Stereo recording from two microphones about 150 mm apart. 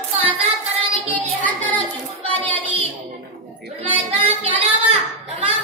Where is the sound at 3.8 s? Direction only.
40° right (ahead or behind).